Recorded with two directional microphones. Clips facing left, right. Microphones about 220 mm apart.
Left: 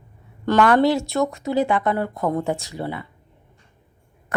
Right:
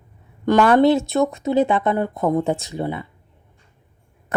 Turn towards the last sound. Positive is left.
turn(degrees=-20)  # may be behind; listen again after turning